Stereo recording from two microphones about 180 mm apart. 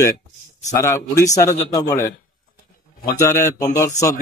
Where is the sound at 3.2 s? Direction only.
15° left (ahead or behind).